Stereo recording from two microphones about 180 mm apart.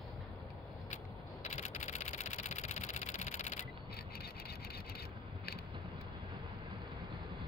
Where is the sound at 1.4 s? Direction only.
40° left (ahead or behind).